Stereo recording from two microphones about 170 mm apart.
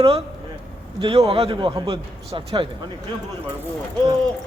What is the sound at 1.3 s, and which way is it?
A man's voice, 35° right (ahead or behind).